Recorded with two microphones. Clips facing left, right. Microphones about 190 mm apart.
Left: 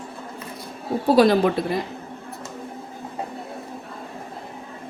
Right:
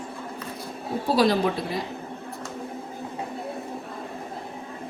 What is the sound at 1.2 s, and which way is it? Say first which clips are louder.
Speech: left 5 dB; 55° left (ahead or behind).